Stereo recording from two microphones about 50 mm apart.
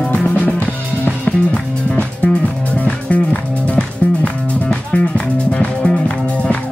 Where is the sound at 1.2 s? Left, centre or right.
Left.